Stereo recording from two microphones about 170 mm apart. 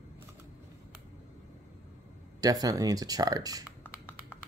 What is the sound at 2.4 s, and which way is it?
Speech, 20° right (ahead or behind).